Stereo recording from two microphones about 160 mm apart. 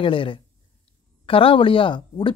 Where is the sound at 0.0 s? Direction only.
30° left (ahead or behind).